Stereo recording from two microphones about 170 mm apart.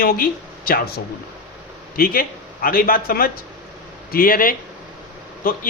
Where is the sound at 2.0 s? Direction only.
60° left (ahead or behind).